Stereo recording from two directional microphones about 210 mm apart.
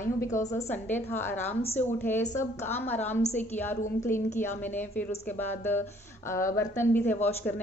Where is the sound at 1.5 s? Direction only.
30° left (ahead or behind).